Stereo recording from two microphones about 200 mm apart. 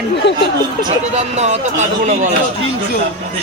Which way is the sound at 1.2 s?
35° right (ahead or behind).